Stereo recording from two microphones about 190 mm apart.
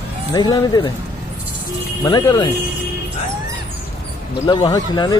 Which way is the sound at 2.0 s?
20° left (ahead or behind).